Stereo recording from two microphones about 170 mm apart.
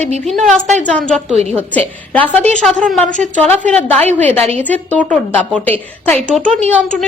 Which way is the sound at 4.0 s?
40° right (ahead or behind).